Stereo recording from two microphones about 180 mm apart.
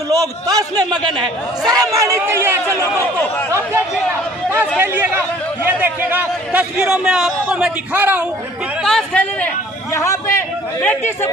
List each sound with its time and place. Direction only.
0.1 s a man's voice: 20° right (ahead or behind)
4.5 s a man's voice: 10° right (ahead or behind)
8.8 s speech: 5° left (ahead or behind)
9.9 s a man's voice: 15° left (ahead or behind)